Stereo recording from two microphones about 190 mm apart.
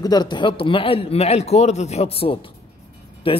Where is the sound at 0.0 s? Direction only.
20° left (ahead or behind).